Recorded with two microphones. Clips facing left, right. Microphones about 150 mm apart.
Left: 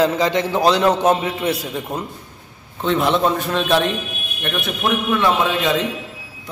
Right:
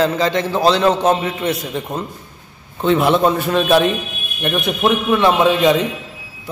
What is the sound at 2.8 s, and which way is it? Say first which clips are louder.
A man's voice: right 3 dB; 5° right (ahead or behind).